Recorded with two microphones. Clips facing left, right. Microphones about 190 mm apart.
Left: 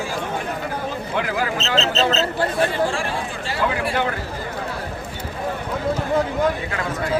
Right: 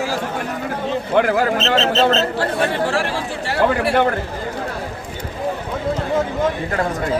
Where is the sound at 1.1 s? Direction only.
55° right (ahead or behind).